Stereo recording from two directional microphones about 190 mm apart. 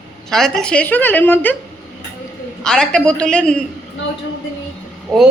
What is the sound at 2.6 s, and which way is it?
A man's voice, 5° left (ahead or behind).